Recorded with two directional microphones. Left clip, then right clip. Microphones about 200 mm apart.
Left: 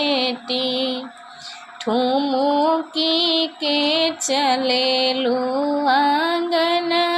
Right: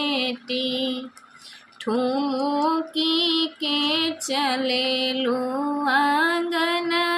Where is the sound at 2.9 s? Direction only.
20° right (ahead or behind).